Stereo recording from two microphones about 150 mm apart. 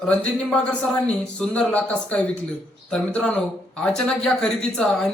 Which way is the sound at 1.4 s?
5° left (ahead or behind).